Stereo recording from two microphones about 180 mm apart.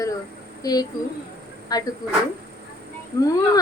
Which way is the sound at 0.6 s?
20° left (ahead or behind).